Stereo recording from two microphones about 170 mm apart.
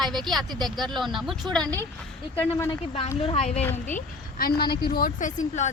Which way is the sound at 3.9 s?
60° left (ahead or behind).